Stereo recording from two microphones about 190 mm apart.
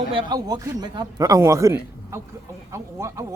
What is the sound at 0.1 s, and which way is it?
A man's voice, 25° right (ahead or behind).